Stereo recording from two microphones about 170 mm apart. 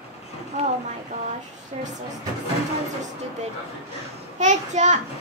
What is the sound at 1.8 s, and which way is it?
Speech, 40° right (ahead or behind).